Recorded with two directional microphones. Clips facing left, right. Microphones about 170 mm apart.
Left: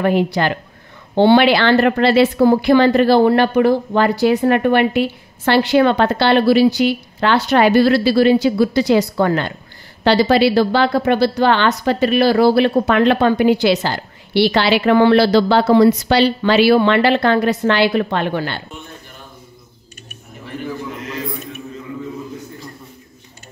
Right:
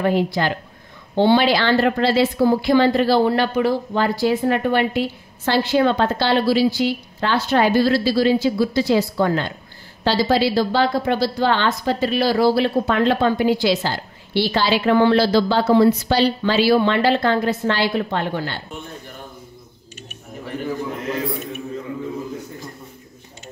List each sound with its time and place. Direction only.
0.0 s a woman's voice: 65° left (ahead or behind)